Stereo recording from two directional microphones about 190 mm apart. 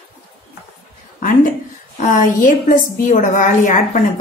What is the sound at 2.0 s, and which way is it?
A woman's voice, 45° left (ahead or behind).